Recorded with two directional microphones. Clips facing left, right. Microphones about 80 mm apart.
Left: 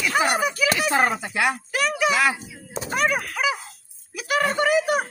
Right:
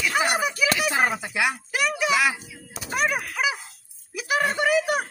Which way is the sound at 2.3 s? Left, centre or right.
Left.